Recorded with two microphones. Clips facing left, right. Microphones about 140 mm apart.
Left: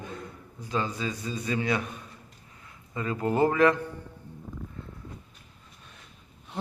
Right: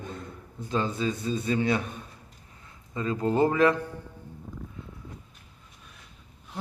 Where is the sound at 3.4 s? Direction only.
25° right (ahead or behind).